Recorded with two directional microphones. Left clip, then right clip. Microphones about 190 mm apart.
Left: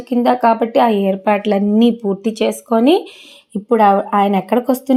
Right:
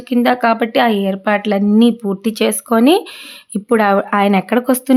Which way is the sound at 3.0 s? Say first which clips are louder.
Right 1 dB; 85° right.